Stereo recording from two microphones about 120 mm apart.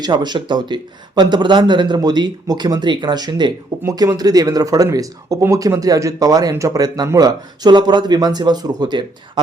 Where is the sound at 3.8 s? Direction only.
25° right (ahead or behind).